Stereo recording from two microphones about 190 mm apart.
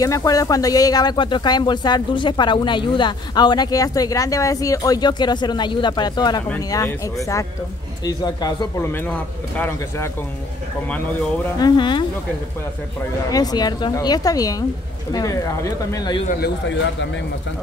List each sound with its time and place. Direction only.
0.0 s speech: 20° left (ahead or behind)
11.5 s speech: 20° left (ahead or behind)
13.3 s speech: 20° left (ahead or behind)